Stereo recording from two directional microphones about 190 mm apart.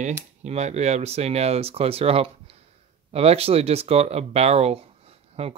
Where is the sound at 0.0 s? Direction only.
35° right (ahead or behind).